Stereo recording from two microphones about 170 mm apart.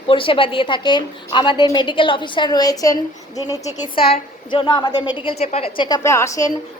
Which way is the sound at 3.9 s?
30° left (ahead or behind).